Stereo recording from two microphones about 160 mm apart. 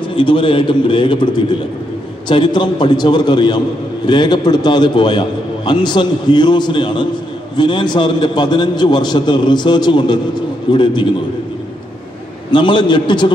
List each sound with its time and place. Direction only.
0.1 s a man's voice: 30° left (ahead or behind)
12.4 s a man's voice: 30° left (ahead or behind)